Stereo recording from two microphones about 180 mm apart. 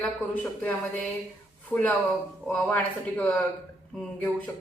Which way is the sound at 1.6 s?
10° left (ahead or behind).